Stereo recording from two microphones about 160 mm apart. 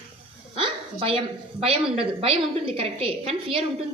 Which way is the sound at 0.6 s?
35° right (ahead or behind).